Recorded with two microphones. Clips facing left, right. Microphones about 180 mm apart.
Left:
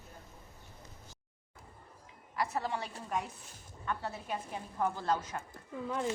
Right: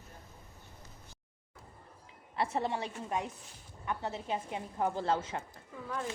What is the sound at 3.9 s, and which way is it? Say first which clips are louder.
A woman's voice: right 2 dB; 20° right (ahead or behind).